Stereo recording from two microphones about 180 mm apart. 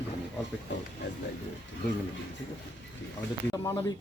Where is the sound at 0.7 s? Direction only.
90° left.